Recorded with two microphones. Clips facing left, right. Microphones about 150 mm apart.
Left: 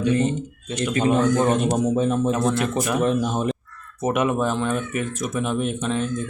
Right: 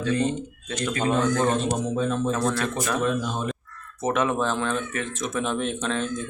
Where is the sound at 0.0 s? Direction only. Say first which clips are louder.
Left 3 dB; 15° left (ahead or behind).